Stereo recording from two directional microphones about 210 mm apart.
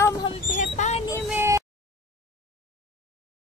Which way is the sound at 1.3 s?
10° right (ahead or behind).